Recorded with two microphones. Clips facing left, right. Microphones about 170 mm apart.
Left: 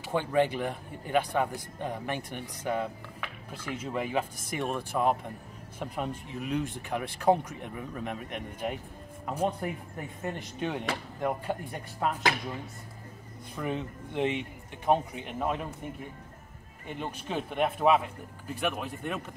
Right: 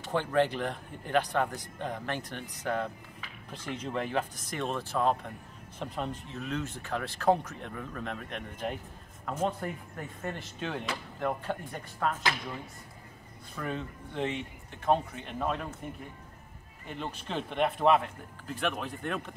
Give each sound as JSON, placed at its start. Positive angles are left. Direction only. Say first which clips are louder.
{"t": 0.0, "sound": "speech", "louder": "left 1 dB", "side_deg": 10}
{"t": 3.2, "sound": "music", "louder": "left 4 dB", "side_deg": 55}
{"t": 3.7, "sound": "speech", "louder": "left 1 dB", "side_deg": 10}
{"t": 13.6, "sound": "speech", "louder": "left 3 dB", "side_deg": 15}
{"t": 17.0, "sound": "a man's voice", "louder": "left 2 dB", "side_deg": 5}